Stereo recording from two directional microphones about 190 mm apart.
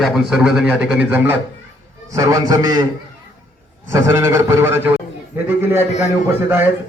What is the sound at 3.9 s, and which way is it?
A man's voice, 15° right (ahead or behind).